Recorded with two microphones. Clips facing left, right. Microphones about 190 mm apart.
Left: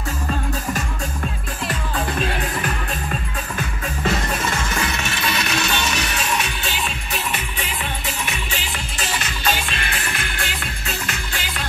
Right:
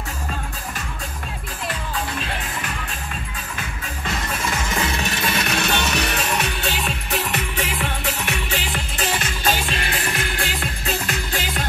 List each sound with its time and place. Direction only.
4.7 s music: 30° right (ahead or behind)